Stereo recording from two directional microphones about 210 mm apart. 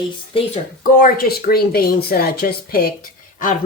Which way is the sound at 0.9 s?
45° left (ahead or behind).